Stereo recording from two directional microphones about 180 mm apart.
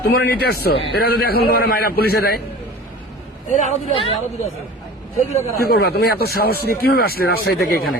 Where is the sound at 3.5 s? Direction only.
40° left (ahead or behind).